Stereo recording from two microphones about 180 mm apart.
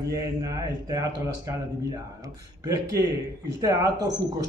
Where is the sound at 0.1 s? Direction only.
20° right (ahead or behind).